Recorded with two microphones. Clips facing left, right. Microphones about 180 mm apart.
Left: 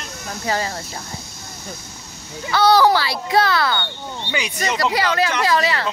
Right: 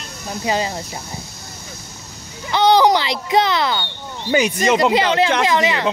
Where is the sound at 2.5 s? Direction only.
20° right (ahead or behind).